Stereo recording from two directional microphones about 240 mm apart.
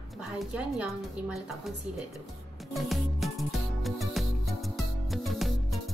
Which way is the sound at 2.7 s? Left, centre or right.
Centre.